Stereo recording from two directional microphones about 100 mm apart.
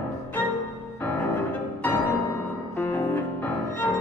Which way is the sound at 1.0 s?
20° left (ahead or behind).